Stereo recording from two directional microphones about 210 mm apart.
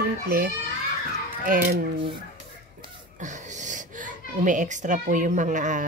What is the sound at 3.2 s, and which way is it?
A child's voice, 35° right (ahead or behind).